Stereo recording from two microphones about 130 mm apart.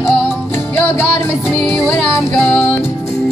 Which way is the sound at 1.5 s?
10° left (ahead or behind).